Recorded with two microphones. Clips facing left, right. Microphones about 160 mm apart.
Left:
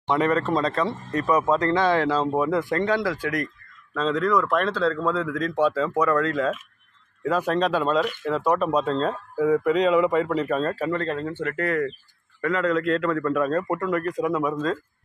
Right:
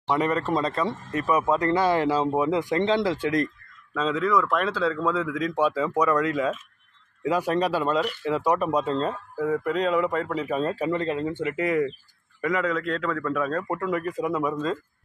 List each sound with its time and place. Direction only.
0.0 s speech: 5° right (ahead or behind); by 3.4 s 25° right (ahead or behind)
3.9 s speech: 5° right (ahead or behind)
12.7 s a man's voice: centre (ahead or behind)